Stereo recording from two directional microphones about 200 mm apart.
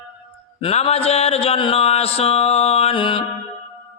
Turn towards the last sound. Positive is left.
turn(degrees=25)  # may be behind; listen again after turning